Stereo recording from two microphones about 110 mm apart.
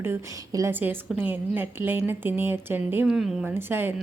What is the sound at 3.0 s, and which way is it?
Speech, 5° right (ahead or behind).